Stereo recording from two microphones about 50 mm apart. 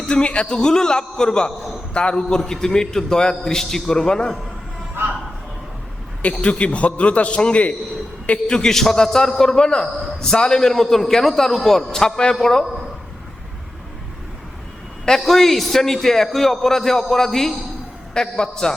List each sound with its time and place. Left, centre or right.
0.0 s a man's voice: centre
6.4 s a man's voice: left
8.4 s a man's voice: centre
15.0 s a man's voice: centre